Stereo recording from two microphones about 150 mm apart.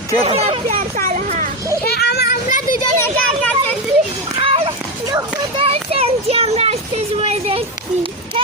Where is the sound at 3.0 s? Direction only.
15° left (ahead or behind).